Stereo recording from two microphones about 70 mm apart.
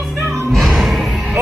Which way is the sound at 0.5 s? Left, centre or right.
Centre.